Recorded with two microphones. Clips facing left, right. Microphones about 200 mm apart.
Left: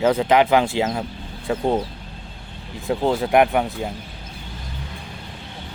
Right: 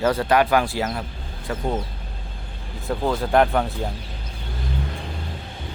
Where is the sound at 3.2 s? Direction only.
15° left (ahead or behind).